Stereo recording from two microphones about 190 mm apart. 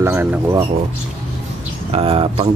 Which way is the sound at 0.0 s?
10° right (ahead or behind).